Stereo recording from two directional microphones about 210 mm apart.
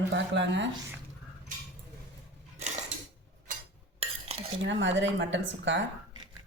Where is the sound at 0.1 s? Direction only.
60° right (ahead or behind).